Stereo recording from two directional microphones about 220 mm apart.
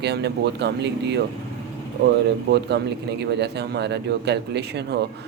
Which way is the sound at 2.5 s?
50° right (ahead or behind).